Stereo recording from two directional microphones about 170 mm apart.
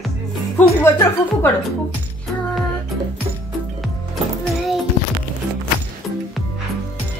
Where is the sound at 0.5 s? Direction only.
10° left (ahead or behind).